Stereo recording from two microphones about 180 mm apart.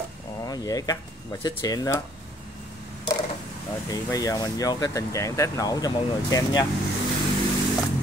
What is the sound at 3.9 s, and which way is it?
Speech, 20° left (ahead or behind).